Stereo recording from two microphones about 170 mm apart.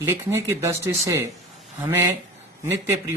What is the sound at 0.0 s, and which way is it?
Speech, 15° right (ahead or behind).